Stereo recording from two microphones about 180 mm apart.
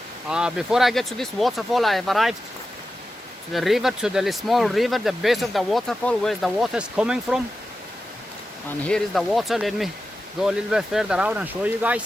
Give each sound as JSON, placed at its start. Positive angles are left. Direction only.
{"t": 0.3, "sound": "speech", "side_deg": -5}
{"t": 3.5, "sound": "speech", "side_deg": 0}
{"t": 8.9, "sound": "speech", "side_deg": 0}